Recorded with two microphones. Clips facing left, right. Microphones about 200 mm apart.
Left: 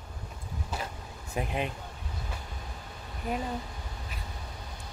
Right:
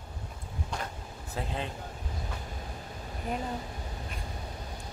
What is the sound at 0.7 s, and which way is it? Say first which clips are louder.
Vehicle: left 1 dB; 5° left (ahead or behind).